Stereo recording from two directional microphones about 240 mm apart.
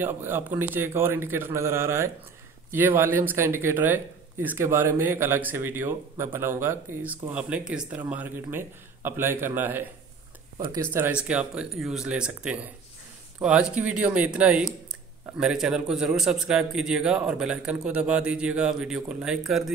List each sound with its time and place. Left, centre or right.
0.0 s a man's voice: centre